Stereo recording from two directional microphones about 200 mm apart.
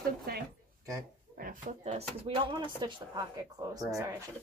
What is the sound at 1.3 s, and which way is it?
Speech, 40° right (ahead or behind).